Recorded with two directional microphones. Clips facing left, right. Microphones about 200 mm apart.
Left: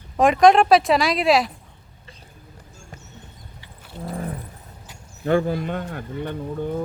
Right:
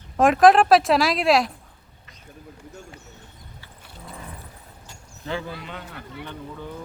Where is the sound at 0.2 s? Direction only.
Centre (ahead or behind).